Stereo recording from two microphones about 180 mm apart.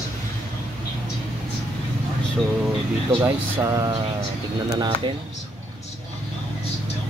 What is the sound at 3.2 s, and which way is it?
Speech, 15° right (ahead or behind).